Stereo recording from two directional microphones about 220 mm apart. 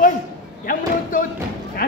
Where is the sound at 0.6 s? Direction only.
40° left (ahead or behind).